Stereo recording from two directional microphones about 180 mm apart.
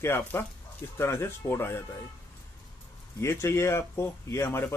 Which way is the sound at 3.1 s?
15° left (ahead or behind).